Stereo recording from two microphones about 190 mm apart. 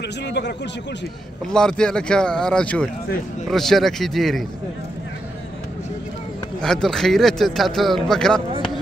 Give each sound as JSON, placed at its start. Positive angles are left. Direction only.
{"t": 0.2, "sound": "speech", "side_deg": 65}
{"t": 1.5, "sound": "speech", "side_deg": 5}
{"t": 6.6, "sound": "speech", "side_deg": 0}